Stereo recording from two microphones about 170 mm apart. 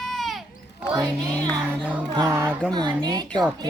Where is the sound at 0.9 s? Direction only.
25° right (ahead or behind).